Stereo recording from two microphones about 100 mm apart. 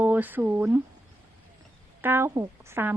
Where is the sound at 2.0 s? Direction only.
25° right (ahead or behind).